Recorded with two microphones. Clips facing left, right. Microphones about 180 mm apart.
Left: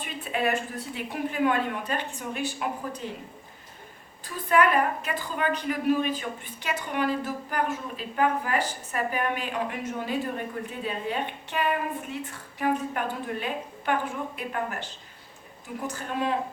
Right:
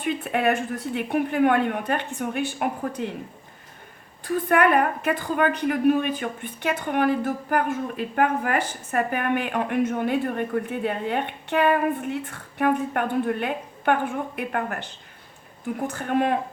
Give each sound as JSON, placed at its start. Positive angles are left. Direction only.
{"t": 0.0, "sound": "a woman's voice", "side_deg": -60}
{"t": 4.3, "sound": "a woman's voice", "side_deg": -55}
{"t": 15.9, "sound": "a woman's voice", "side_deg": -60}